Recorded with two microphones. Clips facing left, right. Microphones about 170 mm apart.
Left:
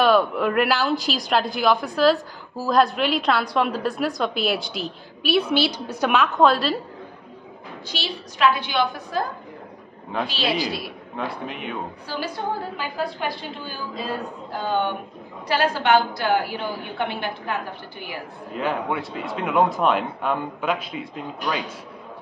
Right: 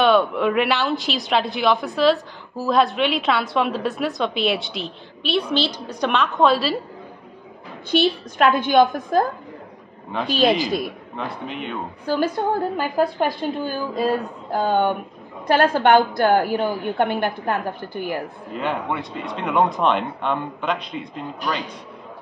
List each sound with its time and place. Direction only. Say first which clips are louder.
0.0 s a woman's voice: right 1 dB; centre (ahead or behind)
7.9 s a woman's voice: right 13 dB; 55° right (ahead or behind)
11.1 s a woman's voice: even; centre (ahead or behind)
12.1 s a woman's voice: right 8 dB; 50° right (ahead or behind)
18.5 s a woman's voice: even; centre (ahead or behind)